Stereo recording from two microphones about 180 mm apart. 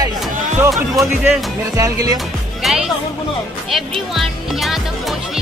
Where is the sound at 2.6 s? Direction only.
Centre (ahead or behind).